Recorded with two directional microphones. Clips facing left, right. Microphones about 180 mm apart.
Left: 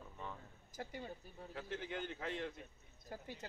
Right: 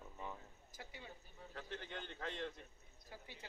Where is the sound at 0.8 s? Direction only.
45° left (ahead or behind).